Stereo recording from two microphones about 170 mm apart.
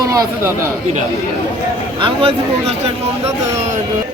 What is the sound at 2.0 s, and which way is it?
Speech, 35° right (ahead or behind).